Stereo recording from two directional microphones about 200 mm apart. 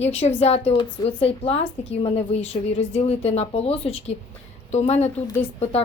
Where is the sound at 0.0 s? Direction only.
30° left (ahead or behind).